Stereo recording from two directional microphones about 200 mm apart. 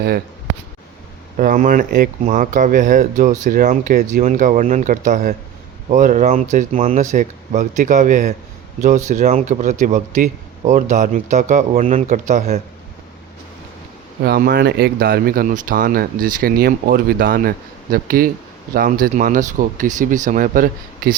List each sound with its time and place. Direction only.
1.4 s speech: 45° right (ahead or behind)
14.3 s speech: 50° right (ahead or behind)